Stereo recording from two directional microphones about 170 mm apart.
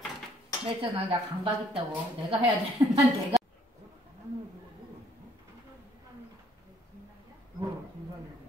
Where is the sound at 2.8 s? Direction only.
15° right (ahead or behind).